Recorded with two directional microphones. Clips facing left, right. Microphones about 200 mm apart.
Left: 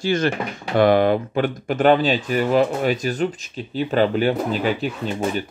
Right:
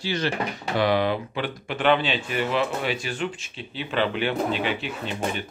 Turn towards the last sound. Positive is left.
turn(degrees=40)  # may be behind; listen again after turning